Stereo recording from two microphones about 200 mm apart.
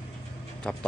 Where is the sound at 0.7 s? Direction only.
5° left (ahead or behind).